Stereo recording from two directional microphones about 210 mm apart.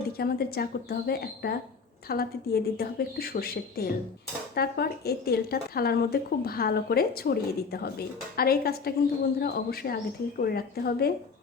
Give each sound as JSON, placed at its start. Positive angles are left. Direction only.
{"t": 0.2, "sound": "speech", "side_deg": 45}